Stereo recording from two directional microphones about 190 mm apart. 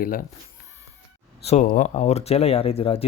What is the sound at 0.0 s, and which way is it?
Speech, 50° left (ahead or behind).